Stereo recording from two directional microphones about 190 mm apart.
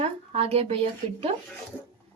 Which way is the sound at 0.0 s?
30° right (ahead or behind).